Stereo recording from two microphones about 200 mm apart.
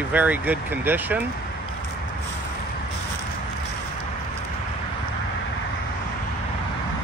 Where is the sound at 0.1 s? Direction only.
10° right (ahead or behind).